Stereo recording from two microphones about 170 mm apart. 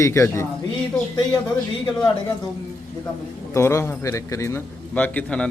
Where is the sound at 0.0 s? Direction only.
15° left (ahead or behind).